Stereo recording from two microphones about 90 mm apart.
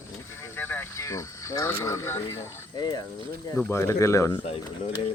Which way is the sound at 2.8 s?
50° left (ahead or behind).